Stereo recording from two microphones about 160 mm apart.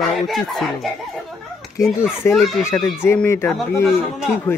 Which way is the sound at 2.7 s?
15° left (ahead or behind).